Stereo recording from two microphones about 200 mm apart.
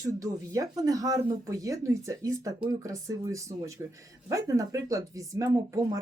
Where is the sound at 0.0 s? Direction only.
15° right (ahead or behind).